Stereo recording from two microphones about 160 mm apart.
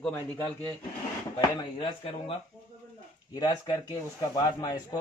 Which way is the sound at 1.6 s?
35° left (ahead or behind).